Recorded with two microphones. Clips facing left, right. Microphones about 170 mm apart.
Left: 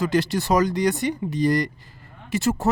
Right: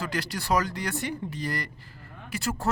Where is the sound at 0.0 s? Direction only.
20° left (ahead or behind).